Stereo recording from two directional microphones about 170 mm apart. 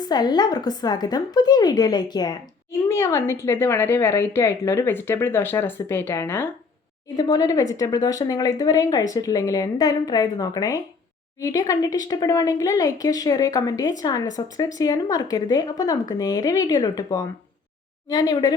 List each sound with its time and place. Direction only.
0.0 s a woman's voice: 25° left (ahead or behind)